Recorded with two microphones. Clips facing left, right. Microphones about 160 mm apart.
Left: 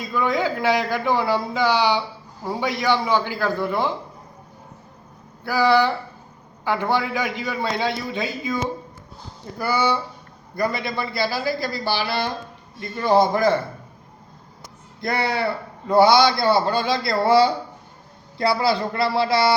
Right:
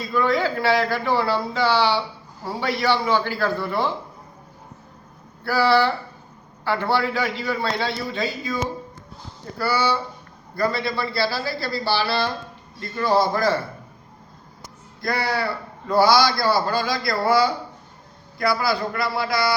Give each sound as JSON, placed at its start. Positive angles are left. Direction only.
{"t": 0.1, "sound": "a man's voice", "side_deg": 15}
{"t": 5.4, "sound": "a man's voice", "side_deg": 15}
{"t": 9.6, "sound": "a man's voice", "side_deg": 15}
{"t": 15.0, "sound": "a man's voice", "side_deg": 20}